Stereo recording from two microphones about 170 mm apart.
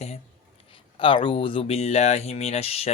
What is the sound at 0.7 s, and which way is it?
Speech, 30° left (ahead or behind).